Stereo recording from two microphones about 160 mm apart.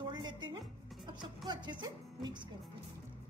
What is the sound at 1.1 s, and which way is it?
Speech, 30° right (ahead or behind).